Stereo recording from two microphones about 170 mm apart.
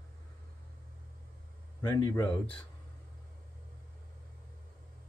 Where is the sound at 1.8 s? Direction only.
20° left (ahead or behind).